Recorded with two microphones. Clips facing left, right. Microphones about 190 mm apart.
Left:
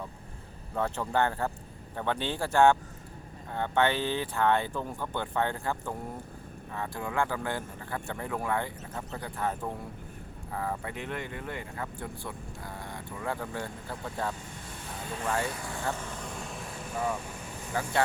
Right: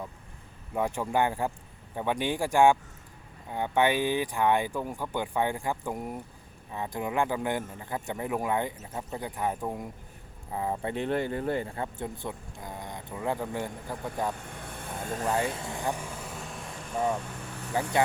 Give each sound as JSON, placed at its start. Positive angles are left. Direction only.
{"t": 0.7, "sound": "speech", "side_deg": -15}
{"t": 14.5, "sound": "vehicle", "side_deg": -55}
{"t": 15.4, "sound": "vehicle", "side_deg": -25}
{"t": 17.7, "sound": "speech", "side_deg": -20}